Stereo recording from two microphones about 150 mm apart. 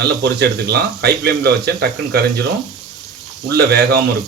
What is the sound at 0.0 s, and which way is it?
Speech, 90° right.